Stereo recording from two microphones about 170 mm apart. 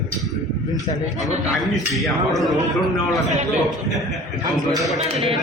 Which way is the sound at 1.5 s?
Centre (ahead or behind).